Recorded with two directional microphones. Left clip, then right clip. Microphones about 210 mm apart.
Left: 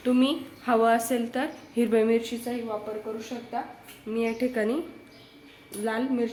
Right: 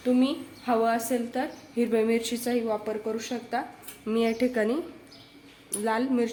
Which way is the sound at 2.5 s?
25° right (ahead or behind).